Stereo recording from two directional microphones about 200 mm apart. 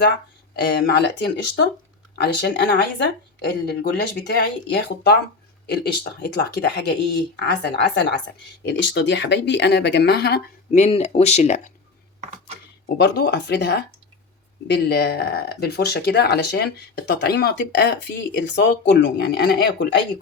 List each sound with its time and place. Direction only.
0.5 s speech: 55° left (ahead or behind)
10.7 s speech: 30° left (ahead or behind)
13.0 s speech: 60° left (ahead or behind)